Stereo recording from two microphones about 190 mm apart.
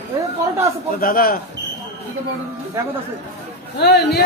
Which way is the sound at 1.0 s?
50° left (ahead or behind).